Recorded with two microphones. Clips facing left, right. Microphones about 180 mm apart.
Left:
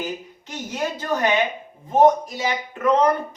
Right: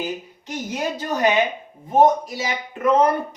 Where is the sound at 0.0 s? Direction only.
15° right (ahead or behind).